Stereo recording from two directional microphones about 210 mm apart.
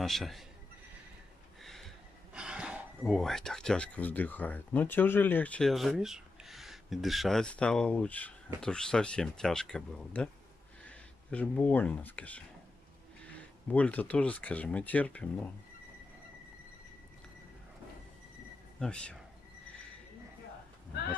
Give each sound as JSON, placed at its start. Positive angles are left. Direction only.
{"t": 0.0, "sound": "speech", "side_deg": 0}
{"t": 1.6, "sound": "a sound", "side_deg": 0}
{"t": 2.3, "sound": "speech", "side_deg": -5}
{"t": 18.8, "sound": "speech", "side_deg": 5}